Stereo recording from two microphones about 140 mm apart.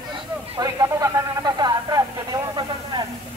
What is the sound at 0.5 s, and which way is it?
Speech, 25° right (ahead or behind).